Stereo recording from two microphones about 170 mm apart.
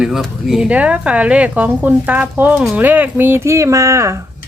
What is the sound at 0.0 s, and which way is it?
Speech, centre (ahead or behind).